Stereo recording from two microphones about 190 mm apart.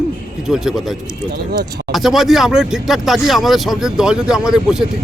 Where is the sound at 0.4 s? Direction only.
5° right (ahead or behind).